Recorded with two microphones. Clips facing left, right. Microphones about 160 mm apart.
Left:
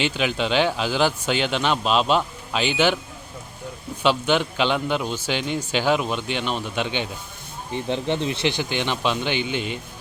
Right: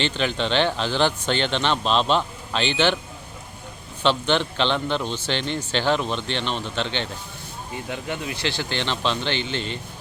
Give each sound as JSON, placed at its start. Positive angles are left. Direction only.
{"t": 0.0, "sound": "a man's voice", "side_deg": 10}
{"t": 4.0, "sound": "a man's voice", "side_deg": 10}
{"t": 7.7, "sound": "a man's voice", "side_deg": 25}